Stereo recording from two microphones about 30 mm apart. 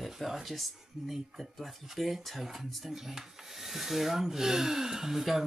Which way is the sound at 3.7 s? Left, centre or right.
Centre.